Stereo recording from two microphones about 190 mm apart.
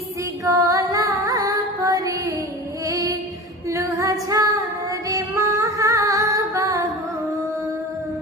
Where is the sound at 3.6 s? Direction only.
15° right (ahead or behind).